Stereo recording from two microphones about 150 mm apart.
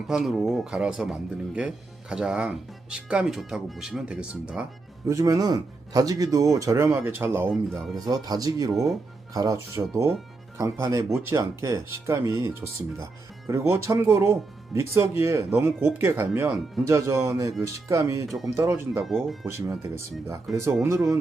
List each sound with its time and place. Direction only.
0.1 s speech: centre (ahead or behind)
5.0 s speech: 25° right (ahead or behind)
7.5 s speech: centre (ahead or behind)
7.9 s speech: 25° right (ahead or behind)
18.3 s speech: centre (ahead or behind)
18.5 s speech: 20° right (ahead or behind)
19.0 s speech: centre (ahead or behind)
19.5 s speech: 20° right (ahead or behind)